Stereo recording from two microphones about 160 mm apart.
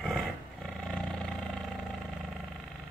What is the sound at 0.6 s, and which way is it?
Vehicle, 5° left (ahead or behind).